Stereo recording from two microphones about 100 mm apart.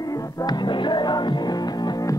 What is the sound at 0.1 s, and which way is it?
Music, 35° left (ahead or behind).